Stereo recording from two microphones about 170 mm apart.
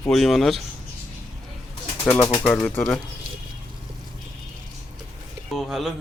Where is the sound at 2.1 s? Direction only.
20° left (ahead or behind).